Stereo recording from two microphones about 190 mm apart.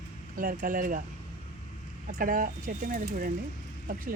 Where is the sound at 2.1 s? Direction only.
45° right (ahead or behind).